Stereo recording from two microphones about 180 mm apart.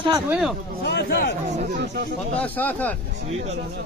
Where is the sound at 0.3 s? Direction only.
5° right (ahead or behind).